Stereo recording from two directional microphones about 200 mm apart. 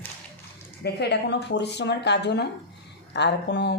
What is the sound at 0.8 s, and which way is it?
Speech, 55° left (ahead or behind).